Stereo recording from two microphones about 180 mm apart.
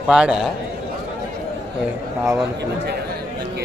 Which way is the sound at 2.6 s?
65° right (ahead or behind).